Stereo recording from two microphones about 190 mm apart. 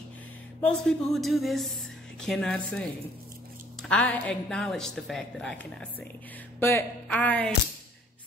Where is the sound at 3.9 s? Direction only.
5° left (ahead or behind).